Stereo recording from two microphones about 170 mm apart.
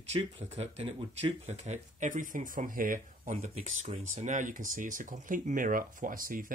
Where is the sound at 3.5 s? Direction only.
40° right (ahead or behind).